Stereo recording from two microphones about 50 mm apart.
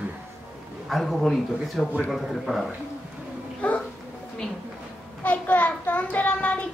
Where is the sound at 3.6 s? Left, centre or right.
Left.